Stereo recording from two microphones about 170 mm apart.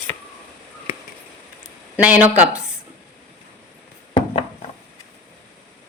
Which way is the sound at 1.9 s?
10° right (ahead or behind).